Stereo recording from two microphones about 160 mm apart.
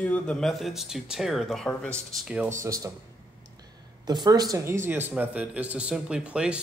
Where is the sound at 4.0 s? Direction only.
25° right (ahead or behind).